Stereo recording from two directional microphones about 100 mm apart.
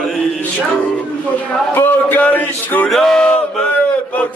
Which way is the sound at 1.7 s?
20° left (ahead or behind).